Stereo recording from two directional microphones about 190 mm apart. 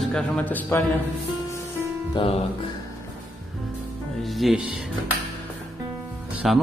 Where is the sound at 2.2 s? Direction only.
25° left (ahead or behind).